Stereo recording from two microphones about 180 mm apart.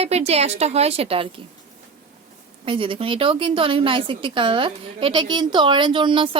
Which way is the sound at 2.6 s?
30° right (ahead or behind).